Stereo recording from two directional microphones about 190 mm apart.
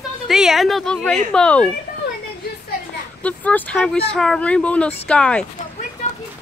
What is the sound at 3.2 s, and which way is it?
Speech, 5° left (ahead or behind).